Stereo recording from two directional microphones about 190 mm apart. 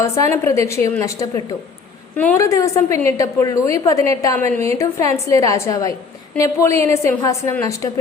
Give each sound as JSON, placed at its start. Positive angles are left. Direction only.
{"t": 0.0, "sound": "a woman's voice", "side_deg": 15}